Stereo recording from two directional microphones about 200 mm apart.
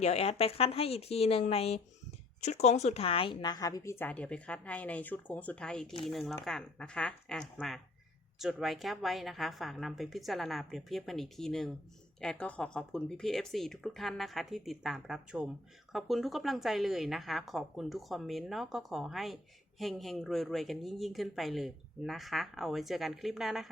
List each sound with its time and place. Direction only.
0.0 s a woman's voice: 30° left (ahead or behind); by 23.6 s centre (ahead or behind)